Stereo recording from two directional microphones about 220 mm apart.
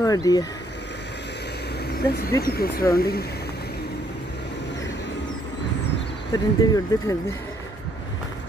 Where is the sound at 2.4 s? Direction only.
45° left (ahead or behind).